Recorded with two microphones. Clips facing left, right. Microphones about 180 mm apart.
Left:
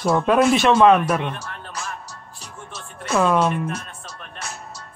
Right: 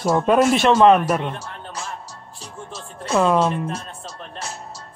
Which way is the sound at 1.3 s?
25° right (ahead or behind).